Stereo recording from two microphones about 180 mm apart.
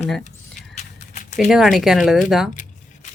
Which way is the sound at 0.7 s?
40° left (ahead or behind).